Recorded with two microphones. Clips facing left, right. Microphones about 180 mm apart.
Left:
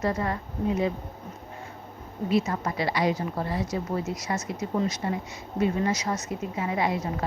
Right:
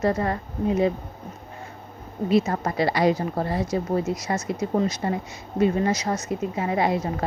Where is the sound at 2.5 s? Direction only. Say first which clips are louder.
Right 4 dB; 40° right (ahead or behind).